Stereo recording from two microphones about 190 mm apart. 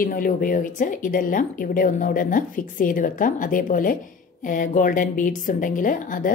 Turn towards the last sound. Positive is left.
turn(degrees=45)  # may be behind; listen again after turning